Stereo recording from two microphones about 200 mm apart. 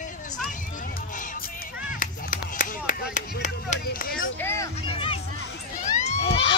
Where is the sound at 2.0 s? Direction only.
40° left (ahead or behind).